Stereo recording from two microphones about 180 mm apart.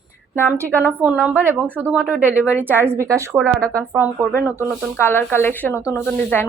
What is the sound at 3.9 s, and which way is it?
Speech, 10° right (ahead or behind).